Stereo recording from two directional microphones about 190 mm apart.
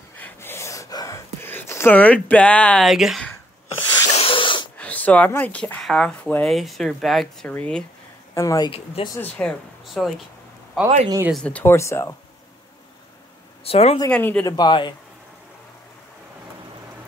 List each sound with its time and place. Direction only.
0.2 s a sound: 10° left (ahead or behind)
4.1 s a sound: 30° left (ahead or behind)
4.7 s speech: 10° left (ahead or behind)
8.4 s speech: 20° left (ahead or behind)
9.2 s speech: 5° left (ahead or behind)
11.1 s speech: 15° right (ahead or behind)
11.3 s speech: 5° left (ahead or behind)
13.7 s speech: 30° left (ahead or behind)
14.0 s speech: 10° left (ahead or behind)
14.4 s speech: 25° left (ahead or behind)